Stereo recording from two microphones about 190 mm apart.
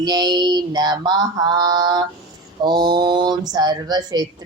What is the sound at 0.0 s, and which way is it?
Speech, 20° right (ahead or behind).